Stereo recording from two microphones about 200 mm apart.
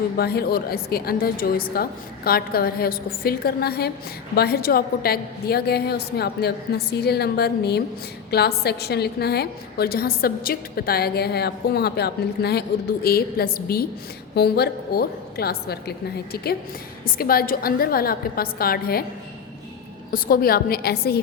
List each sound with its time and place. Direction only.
0.2 s a woman's voice: 50° left (ahead or behind)
20.1 s a woman's voice: 45° left (ahead or behind)